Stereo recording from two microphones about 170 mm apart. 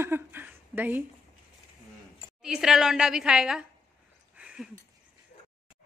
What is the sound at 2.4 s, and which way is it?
A woman's voice, 5° right (ahead or behind).